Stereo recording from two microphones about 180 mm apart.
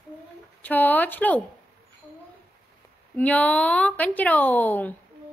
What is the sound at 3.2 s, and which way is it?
Speech, 10° left (ahead or behind).